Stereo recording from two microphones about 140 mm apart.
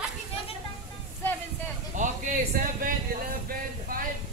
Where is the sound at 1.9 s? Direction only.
65° right (ahead or behind); by 4.0 s 90° right.